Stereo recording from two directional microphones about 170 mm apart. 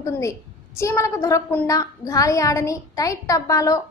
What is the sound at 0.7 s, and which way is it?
A woman's voice, 15° left (ahead or behind).